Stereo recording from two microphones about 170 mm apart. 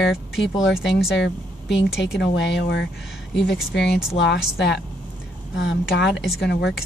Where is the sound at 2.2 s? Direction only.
90° left.